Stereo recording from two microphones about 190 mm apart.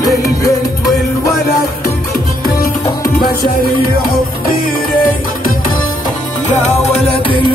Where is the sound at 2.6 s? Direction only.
50° left (ahead or behind).